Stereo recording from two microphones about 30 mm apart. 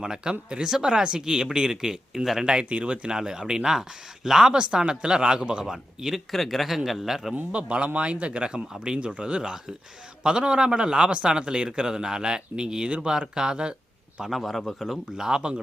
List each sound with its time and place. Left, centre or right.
0.0 s speech: right
2.6 s speech: right
3.1 s a man's voice: right
5.6 s speech: centre
6.1 s speech: centre
7.5 s a man's voice: right
14.3 s speech: centre
15.1 s speech: right